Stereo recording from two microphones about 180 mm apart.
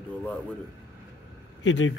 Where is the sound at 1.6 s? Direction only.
90° left.